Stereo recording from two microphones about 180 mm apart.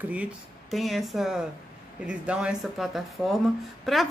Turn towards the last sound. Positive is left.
turn(degrees=0)  # may be behind; listen again after turning